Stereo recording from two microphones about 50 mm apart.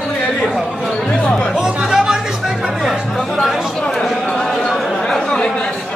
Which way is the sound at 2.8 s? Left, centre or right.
Centre.